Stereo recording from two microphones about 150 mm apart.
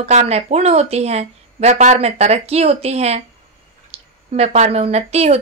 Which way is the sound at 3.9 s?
40° right (ahead or behind).